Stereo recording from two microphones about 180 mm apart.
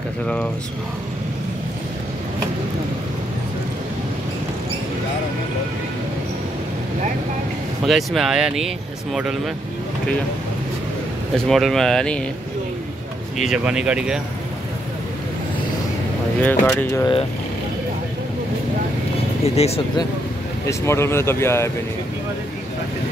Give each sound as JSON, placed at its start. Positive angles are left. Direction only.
{"t": 7.8, "sound": "speech", "side_deg": 0}
{"t": 11.3, "sound": "speech", "side_deg": 0}
{"t": 13.4, "sound": "speech", "side_deg": -5}
{"t": 16.3, "sound": "speech", "side_deg": 10}
{"t": 19.4, "sound": "speech", "side_deg": 35}
{"t": 20.6, "sound": "speech", "side_deg": 15}